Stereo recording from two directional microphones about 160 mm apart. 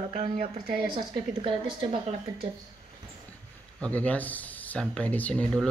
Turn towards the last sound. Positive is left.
turn(degrees=5)  # may be behind; listen again after turning